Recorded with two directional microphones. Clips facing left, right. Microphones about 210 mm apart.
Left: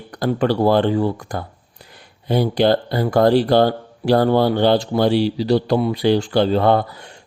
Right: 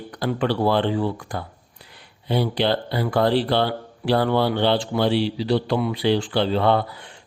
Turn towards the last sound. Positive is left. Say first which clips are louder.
# left 3 dB
turn(degrees=45)  # may be behind; listen again after turning